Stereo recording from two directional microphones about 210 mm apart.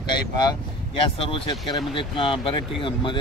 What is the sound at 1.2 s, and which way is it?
Speech, 25° left (ahead or behind).